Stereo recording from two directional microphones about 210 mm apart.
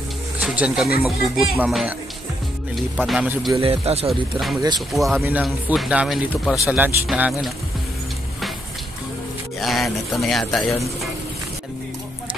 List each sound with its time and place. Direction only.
0.4 s speech: 5° right (ahead or behind)
3.5 s speech: 25° right (ahead or behind)
4.7 s speech: centre (ahead or behind)
9.6 s speech: centre (ahead or behind)